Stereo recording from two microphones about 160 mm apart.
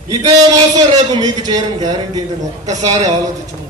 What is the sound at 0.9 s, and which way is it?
A man's voice, 25° right (ahead or behind).